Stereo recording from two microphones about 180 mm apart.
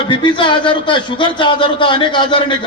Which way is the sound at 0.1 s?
25° left (ahead or behind).